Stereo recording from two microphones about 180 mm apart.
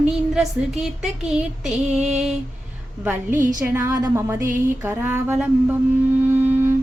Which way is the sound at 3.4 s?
45° right (ahead or behind).